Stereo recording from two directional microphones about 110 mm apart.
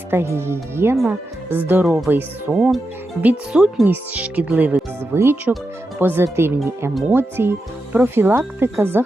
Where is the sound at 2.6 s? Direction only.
Centre (ahead or behind).